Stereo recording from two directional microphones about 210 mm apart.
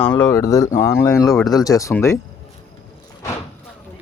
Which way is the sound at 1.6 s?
15° left (ahead or behind).